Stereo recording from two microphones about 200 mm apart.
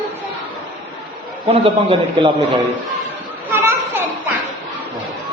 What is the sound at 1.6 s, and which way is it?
Speech, 25° right (ahead or behind).